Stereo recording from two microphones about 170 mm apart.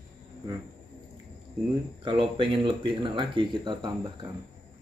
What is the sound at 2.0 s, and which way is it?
Speech, 30° right (ahead or behind).